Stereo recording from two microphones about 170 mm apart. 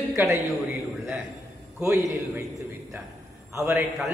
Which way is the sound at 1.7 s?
15° right (ahead or behind).